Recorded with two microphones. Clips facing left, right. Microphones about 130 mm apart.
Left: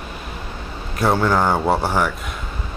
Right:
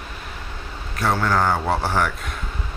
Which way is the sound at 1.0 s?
20° left (ahead or behind).